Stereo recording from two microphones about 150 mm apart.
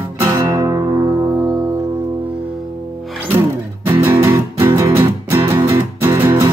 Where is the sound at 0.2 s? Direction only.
20° right (ahead or behind).